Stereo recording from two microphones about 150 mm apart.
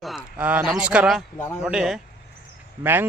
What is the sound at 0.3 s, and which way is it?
Speech, 10° right (ahead or behind).